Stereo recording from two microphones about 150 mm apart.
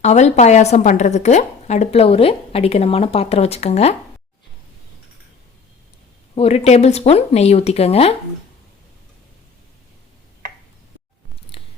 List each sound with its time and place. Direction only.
0.0 s a woman's voice: 50° left (ahead or behind)
6.3 s a woman's voice: 45° left (ahead or behind)
11.5 s scissors: 40° left (ahead or behind)